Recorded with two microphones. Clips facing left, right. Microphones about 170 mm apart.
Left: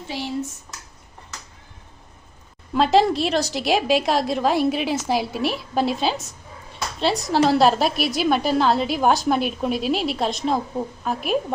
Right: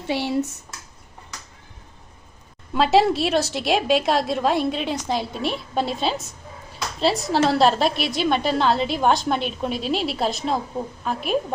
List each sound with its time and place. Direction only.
0.1 s speech: 70° right (ahead or behind)
2.7 s a woman's voice: centre (ahead or behind)